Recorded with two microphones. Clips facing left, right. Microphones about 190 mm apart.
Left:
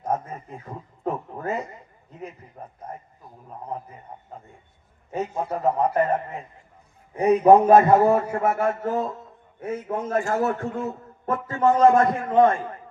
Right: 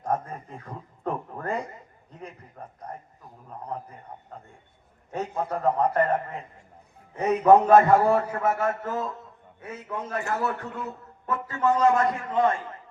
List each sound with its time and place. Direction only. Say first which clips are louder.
0.0 s a man's voice: left 1 dB; 5° left (ahead or behind)
3.7 s a man's voice: left 2 dB; 5° left (ahead or behind)
5.1 s a man's voice: left 2 dB; 10° left (ahead or behind); by 9.1 s 30° left (ahead or behind)
9.6 s a man's voice: left 7 dB; 45° left (ahead or behind)